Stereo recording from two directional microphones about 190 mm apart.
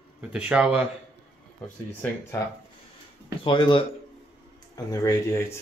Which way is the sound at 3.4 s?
25° left (ahead or behind).